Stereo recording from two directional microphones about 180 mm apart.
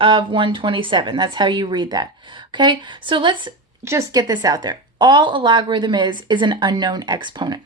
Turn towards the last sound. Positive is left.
turn(degrees=-25)  # may be behind; listen again after turning